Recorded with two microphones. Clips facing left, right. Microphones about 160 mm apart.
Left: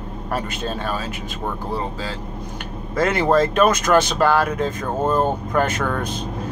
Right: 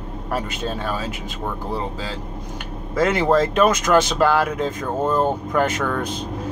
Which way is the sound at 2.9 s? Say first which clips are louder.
Even; 10° right (ahead or behind).